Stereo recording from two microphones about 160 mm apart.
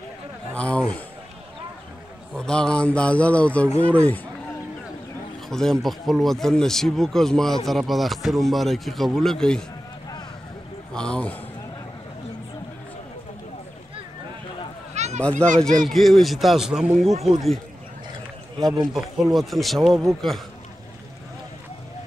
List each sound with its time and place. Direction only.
0.6 s a sound: 5° left (ahead or behind)
2.3 s speech: 5° left (ahead or behind)
5.5 s speech: 5° left (ahead or behind)
11.0 s speech: 5° left (ahead or behind)
15.0 s a sound: 45° right (ahead or behind)
15.2 s speech: 5° left (ahead or behind)
18.9 s speech: centre (ahead or behind)